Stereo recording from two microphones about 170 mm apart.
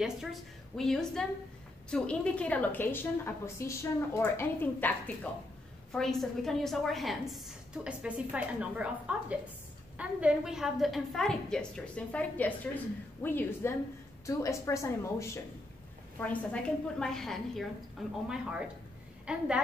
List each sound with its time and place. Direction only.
0.0 s a woman's voice: centre (ahead or behind); by 15.4 s 15° left (ahead or behind)
16.2 s a woman's voice: 5° left (ahead or behind)